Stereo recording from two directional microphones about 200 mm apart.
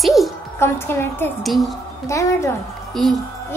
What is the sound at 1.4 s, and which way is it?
Speech, centre (ahead or behind).